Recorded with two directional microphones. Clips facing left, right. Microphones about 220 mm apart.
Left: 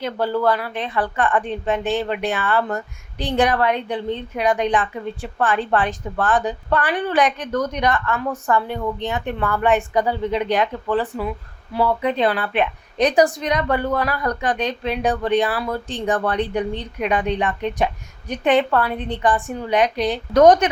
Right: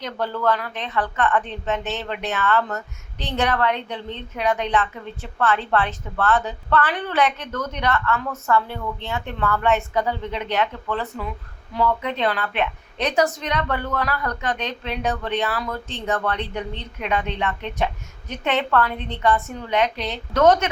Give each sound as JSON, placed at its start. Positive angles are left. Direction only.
{"t": 0.0, "sound": "a woman's voice", "side_deg": 5}
{"t": 10.6, "sound": "speech", "side_deg": 35}
{"t": 11.7, "sound": "a woman's voice", "side_deg": 10}